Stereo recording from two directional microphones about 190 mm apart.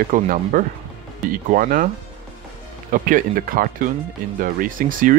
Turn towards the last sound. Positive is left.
turn(degrees=-45)  # may be behind; listen again after turning